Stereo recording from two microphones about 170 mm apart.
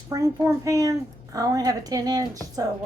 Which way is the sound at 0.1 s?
20° right (ahead or behind).